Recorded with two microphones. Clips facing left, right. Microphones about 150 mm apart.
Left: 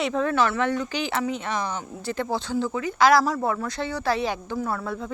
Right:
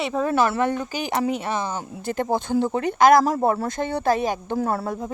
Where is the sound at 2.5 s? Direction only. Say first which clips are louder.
Right 4 dB; 60° right (ahead or behind).